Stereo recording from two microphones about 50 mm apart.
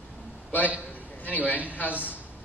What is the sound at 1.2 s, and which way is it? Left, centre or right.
Speech, left.